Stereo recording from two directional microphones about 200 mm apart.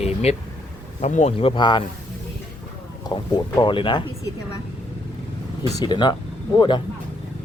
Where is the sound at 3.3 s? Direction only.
20° left (ahead or behind).